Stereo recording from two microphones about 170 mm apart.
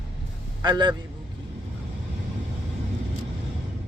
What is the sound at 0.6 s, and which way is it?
Speech, 25° right (ahead or behind).